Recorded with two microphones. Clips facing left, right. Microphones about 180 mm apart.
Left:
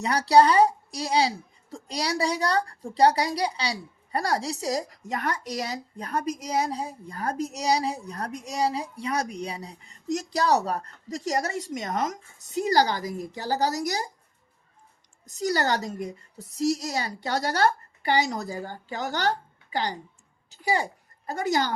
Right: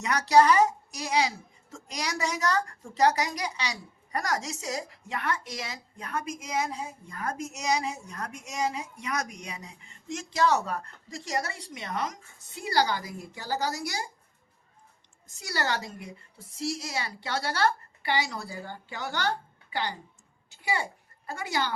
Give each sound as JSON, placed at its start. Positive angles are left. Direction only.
{"t": 0.0, "sound": "a woman's voice", "side_deg": 35}
{"t": 15.3, "sound": "a woman's voice", "side_deg": 40}
{"t": 20.5, "sound": "a sound", "side_deg": 40}
{"t": 21.2, "sound": "a woman's voice", "side_deg": 40}